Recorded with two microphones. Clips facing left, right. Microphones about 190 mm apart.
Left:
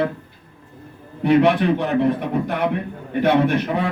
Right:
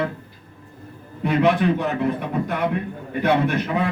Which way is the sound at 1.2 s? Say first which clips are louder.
Left 3 dB; 65° left (ahead or behind).